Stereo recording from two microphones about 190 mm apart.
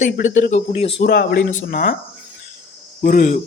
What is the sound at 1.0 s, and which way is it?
Speech, 55° left (ahead or behind).